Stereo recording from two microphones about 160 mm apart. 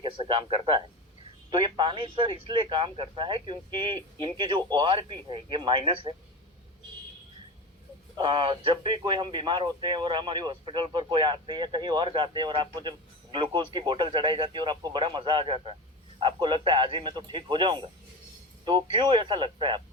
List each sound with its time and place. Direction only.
0.0 s speech: 30° right (ahead or behind)
8.1 s speech: 30° right (ahead or behind)